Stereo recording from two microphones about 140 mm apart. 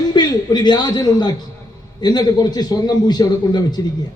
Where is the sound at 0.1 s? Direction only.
30° left (ahead or behind).